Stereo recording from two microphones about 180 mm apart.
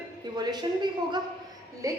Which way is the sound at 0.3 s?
25° right (ahead or behind).